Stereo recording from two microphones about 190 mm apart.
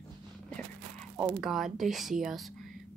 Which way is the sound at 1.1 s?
Centre (ahead or behind).